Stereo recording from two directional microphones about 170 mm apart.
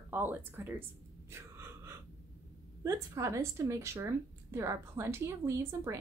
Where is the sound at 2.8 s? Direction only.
20° right (ahead or behind).